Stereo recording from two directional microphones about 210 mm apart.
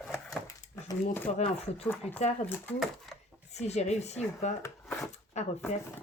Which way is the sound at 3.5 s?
30° left (ahead or behind).